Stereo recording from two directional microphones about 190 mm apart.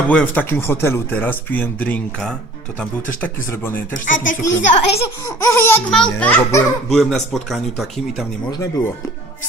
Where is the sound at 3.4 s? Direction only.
15° left (ahead or behind).